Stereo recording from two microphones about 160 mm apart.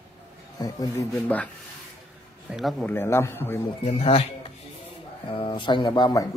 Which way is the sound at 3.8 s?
40° left (ahead or behind).